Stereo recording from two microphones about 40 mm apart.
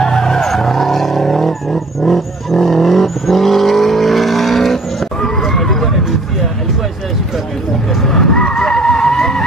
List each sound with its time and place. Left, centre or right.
0.0 s vehicle: centre
5.2 s a sound: centre
8.1 s vehicle: centre